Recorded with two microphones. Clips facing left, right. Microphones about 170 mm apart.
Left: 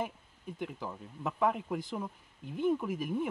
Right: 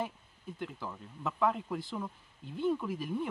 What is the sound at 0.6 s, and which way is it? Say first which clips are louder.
Speech: left 2 dB; 15° left (ahead or behind).